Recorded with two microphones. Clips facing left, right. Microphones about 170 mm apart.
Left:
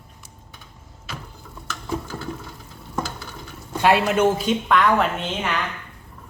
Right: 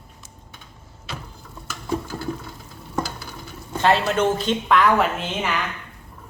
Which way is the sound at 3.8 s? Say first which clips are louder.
Left 1 dB; 10° left (ahead or behind).